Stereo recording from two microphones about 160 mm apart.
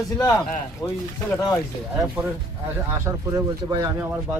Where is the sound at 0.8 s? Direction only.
25° left (ahead or behind).